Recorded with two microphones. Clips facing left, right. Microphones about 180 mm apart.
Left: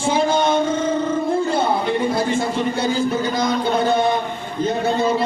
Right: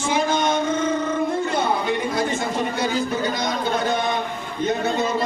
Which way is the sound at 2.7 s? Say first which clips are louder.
Left 3 dB; 30° left (ahead or behind).